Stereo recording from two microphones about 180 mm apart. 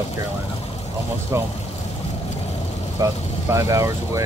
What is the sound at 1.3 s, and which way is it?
Speech, 15° right (ahead or behind).